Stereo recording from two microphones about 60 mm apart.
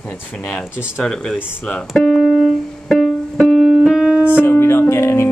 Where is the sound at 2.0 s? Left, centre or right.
Centre.